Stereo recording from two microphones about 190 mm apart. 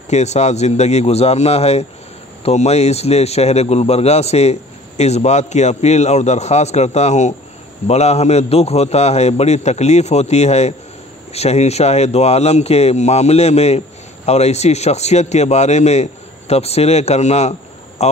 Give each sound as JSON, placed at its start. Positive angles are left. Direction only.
{"t": 0.1, "sound": "speech", "side_deg": 35}